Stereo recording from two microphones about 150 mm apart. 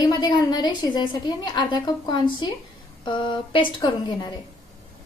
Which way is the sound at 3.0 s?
35° left (ahead or behind).